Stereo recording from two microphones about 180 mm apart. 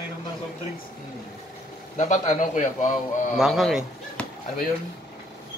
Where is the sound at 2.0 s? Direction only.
40° left (ahead or behind).